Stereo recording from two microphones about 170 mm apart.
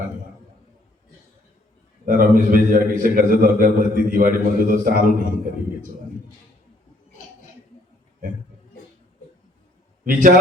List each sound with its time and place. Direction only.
2.0 s a man's voice: 55° right (ahead or behind)
10.0 s a man's voice: 55° right (ahead or behind)